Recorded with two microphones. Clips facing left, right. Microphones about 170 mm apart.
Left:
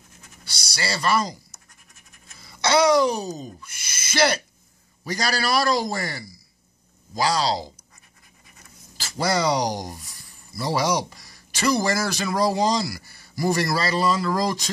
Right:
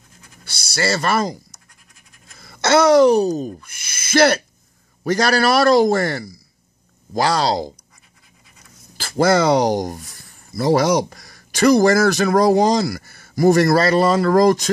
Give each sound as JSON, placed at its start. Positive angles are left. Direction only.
{"t": 0.7, "sound": "speech", "side_deg": -50}
{"t": 2.3, "sound": "a sound", "side_deg": -55}
{"t": 3.3, "sound": "a man's voice", "side_deg": -50}
{"t": 8.9, "sound": "speech", "side_deg": -50}